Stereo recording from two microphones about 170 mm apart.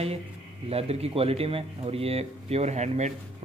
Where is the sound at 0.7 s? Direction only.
35° right (ahead or behind).